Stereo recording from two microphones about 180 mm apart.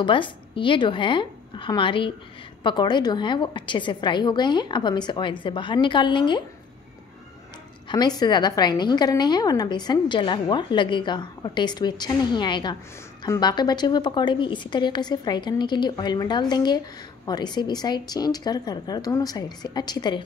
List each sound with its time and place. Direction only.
0.0 s a woman's voice: 25° left (ahead or behind)
7.9 s a woman's voice: 25° left (ahead or behind)